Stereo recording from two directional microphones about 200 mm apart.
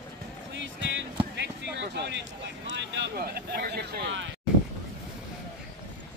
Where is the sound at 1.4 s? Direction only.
60° right (ahead or behind).